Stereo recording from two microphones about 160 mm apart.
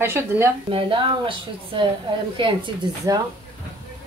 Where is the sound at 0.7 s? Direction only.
35° right (ahead or behind).